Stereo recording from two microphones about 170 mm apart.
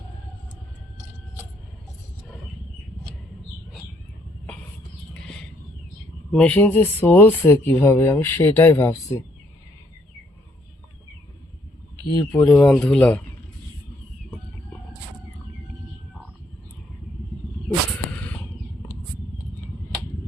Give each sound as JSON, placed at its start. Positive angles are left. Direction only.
{"t": 5.1, "sound": "a sound", "side_deg": 5}
{"t": 6.3, "sound": "speech", "side_deg": 10}
{"t": 12.1, "sound": "speech", "side_deg": 15}
{"t": 12.4, "sound": "speech", "side_deg": 5}